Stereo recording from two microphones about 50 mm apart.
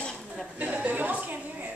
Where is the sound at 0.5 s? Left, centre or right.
Right.